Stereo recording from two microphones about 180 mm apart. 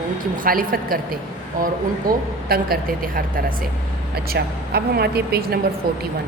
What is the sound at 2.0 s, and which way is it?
A woman's voice, 55° right (ahead or behind).